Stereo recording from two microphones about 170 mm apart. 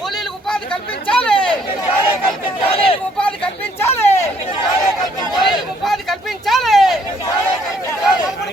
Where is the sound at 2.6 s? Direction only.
35° left (ahead or behind).